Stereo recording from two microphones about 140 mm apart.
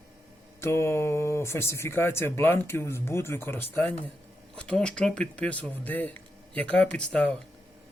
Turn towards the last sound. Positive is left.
turn(degrees=10)  # may be behind; listen again after turning